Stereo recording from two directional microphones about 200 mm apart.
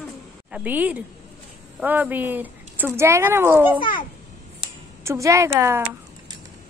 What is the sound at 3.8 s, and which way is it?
Speech, 25° left (ahead or behind).